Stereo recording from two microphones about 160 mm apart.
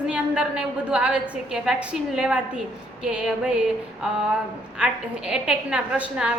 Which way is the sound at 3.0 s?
5° right (ahead or behind).